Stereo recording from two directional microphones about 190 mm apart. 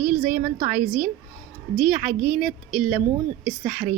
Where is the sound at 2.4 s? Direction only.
Centre (ahead or behind).